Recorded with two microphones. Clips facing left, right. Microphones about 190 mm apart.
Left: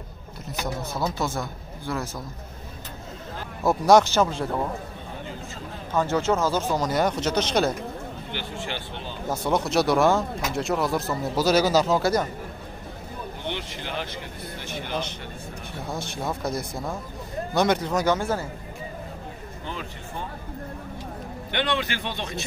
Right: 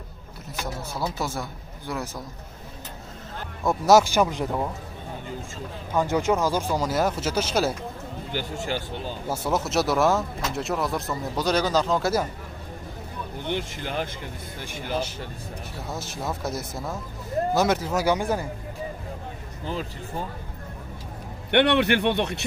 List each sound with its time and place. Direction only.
0.9 s speech: 5° right (ahead or behind)
3.6 s speech: 5° right (ahead or behind)
5.9 s speech: 15° right (ahead or behind)
8.3 s speech: 40° right (ahead or behind)
9.3 s speech: 5° right (ahead or behind)
13.5 s speech: 45° right (ahead or behind)
14.9 s speech: 5° right (ahead or behind)
19.6 s speech: 35° right (ahead or behind)
21.5 s a man's voice: 65° right (ahead or behind)